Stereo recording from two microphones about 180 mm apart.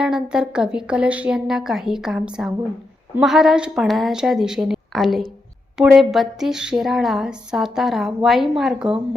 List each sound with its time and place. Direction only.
0.0 s speech: 5° right (ahead or behind)